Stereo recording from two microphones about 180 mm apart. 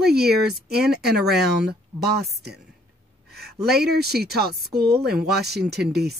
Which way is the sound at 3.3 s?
65° right (ahead or behind).